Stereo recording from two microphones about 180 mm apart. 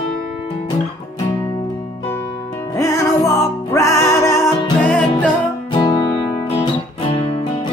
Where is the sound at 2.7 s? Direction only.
15° left (ahead or behind).